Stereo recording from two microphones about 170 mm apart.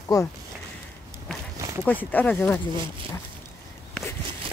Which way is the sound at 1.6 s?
20° right (ahead or behind).